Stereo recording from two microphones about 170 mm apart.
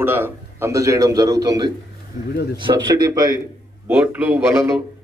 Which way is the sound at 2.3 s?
70° left (ahead or behind).